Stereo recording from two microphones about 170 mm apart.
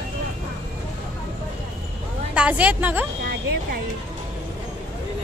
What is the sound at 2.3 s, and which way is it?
Speech, 5° right (ahead or behind).